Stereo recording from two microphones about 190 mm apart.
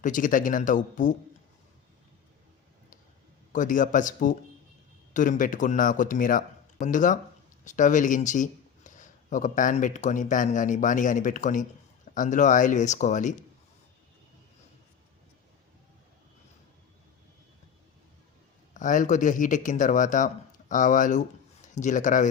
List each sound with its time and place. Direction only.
0.0 s speech: 45° left (ahead or behind)
3.5 s a man's voice: 45° left (ahead or behind)
18.7 s a man's voice: 40° left (ahead or behind)